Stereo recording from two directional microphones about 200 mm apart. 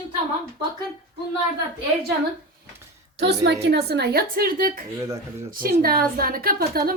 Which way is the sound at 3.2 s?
60° right (ahead or behind).